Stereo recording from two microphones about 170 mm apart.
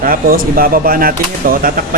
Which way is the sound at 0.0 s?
55° right (ahead or behind).